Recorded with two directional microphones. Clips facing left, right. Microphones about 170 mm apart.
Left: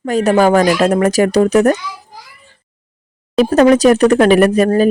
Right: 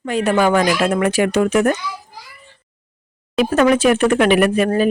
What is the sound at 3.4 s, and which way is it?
Speech, 35° left (ahead or behind).